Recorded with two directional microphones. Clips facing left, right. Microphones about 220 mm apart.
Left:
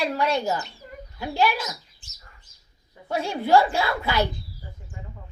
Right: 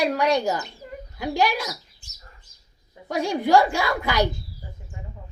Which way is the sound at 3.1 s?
15° right (ahead or behind).